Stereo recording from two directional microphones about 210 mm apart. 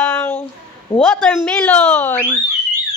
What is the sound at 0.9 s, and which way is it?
Speech, 25° left (ahead or behind).